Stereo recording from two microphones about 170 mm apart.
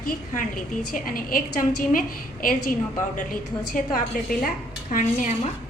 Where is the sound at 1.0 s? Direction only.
55° left (ahead or behind).